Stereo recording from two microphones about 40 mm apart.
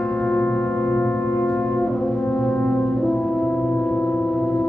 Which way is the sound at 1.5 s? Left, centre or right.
Left.